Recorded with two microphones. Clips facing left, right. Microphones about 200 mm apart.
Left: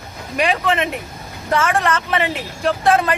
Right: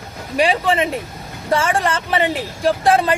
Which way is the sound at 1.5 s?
30° right (ahead or behind).